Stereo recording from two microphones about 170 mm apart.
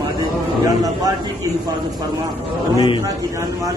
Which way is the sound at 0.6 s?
20° right (ahead or behind).